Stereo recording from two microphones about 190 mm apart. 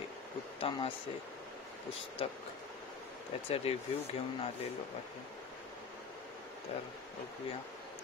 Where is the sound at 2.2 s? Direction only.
30° left (ahead or behind).